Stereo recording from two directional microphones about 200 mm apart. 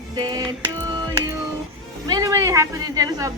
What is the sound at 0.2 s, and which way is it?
Music, 20° right (ahead or behind).